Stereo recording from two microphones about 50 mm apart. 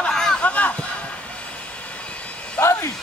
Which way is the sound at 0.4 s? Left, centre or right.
Left.